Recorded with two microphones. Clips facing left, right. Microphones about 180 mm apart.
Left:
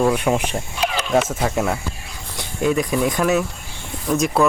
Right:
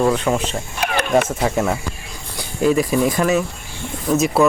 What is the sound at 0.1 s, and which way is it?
Speech, 15° left (ahead or behind).